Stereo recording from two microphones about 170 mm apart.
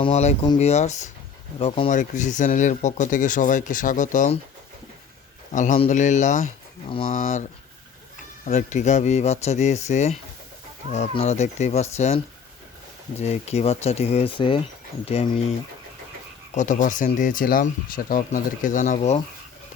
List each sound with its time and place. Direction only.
0.0 s speech: 40° left (ahead or behind)
1.5 s speech: 35° left (ahead or behind)
1.9 s speech: 45° left (ahead or behind)
5.5 s speech: 45° left (ahead or behind)
8.4 s speech: 40° left (ahead or behind)
16.6 s speech: 45° left (ahead or behind)